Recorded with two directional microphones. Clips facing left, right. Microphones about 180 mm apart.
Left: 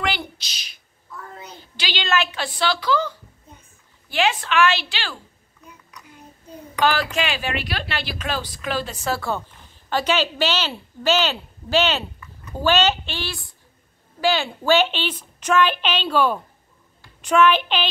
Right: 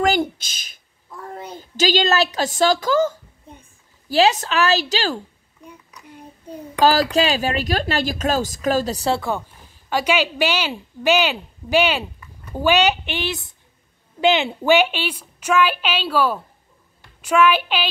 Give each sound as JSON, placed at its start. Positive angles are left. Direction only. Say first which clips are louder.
{"t": 0.0, "sound": "a sound", "louder": "right 8 dB", "side_deg": -45}
{"t": 1.6, "sound": "a woman's voice", "louder": "right 12 dB", "side_deg": -45}
{"t": 6.7, "sound": "speech", "louder": "right 5 dB", "side_deg": -35}
{"t": 9.8, "sound": "a woman's voice", "louder": "right 2 dB", "side_deg": -10}